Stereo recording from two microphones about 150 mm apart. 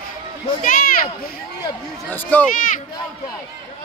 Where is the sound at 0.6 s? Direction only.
70° left (ahead or behind).